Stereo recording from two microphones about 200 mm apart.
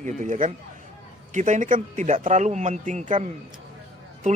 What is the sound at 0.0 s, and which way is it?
Speech, 40° right (ahead or behind).